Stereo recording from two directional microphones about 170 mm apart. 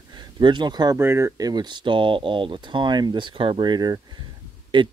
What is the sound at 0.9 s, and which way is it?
Speech, 15° right (ahead or behind).